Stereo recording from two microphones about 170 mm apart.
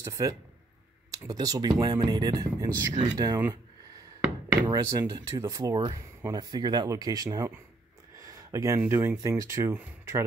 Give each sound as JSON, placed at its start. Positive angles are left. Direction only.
{"t": 0.0, "sound": "speech", "side_deg": -20}
{"t": 4.6, "sound": "speech", "side_deg": -20}